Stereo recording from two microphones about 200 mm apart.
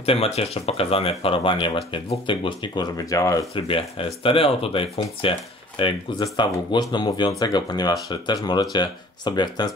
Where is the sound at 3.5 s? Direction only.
25° left (ahead or behind).